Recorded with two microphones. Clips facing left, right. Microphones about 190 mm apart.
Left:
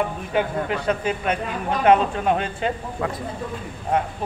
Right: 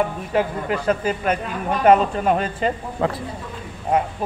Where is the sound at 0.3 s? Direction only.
Centre (ahead or behind).